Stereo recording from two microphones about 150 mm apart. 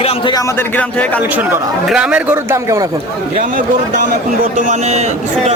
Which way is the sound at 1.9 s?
5° right (ahead or behind).